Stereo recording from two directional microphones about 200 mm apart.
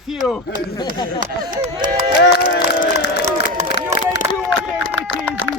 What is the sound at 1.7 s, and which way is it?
Speech, 25° right (ahead or behind).